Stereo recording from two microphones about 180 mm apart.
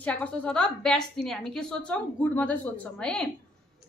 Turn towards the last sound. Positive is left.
turn(degrees=5)  # may be behind; listen again after turning